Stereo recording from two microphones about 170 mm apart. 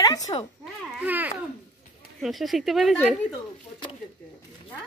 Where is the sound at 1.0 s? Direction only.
10° right (ahead or behind).